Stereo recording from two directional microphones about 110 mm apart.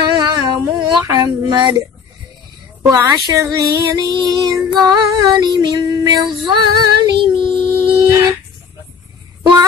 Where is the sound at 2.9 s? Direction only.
35° right (ahead or behind).